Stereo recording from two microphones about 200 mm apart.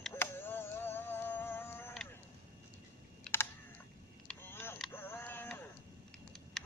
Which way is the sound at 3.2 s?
10° left (ahead or behind).